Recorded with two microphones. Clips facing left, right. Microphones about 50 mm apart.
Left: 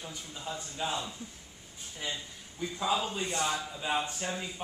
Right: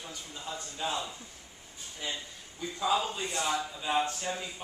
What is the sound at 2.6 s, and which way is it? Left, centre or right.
A man's voice, centre.